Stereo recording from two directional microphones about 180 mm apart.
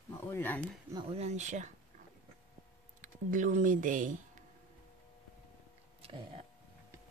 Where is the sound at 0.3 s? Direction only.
10° left (ahead or behind).